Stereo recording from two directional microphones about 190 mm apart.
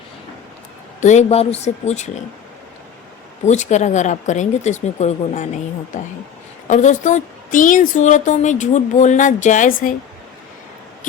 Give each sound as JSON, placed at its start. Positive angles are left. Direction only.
{"t": 1.0, "sound": "a woman's voice", "side_deg": 35}
{"t": 3.4, "sound": "a woman's voice", "side_deg": 35}
{"t": 6.7, "sound": "a woman's voice", "side_deg": 40}